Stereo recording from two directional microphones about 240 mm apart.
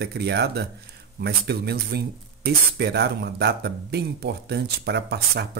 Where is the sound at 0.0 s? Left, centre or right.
Right.